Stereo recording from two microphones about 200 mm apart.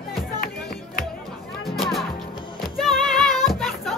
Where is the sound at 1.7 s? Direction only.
Centre (ahead or behind).